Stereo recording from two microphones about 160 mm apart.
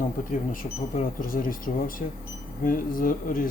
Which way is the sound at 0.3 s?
60° left (ahead or behind).